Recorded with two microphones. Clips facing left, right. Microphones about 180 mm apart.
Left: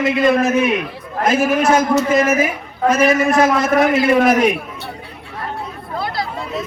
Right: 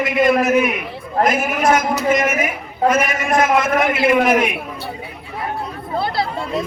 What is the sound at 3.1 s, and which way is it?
A man's voice, 30° left (ahead or behind).